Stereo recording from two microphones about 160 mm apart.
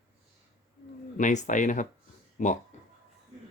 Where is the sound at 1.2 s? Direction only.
50° left (ahead or behind).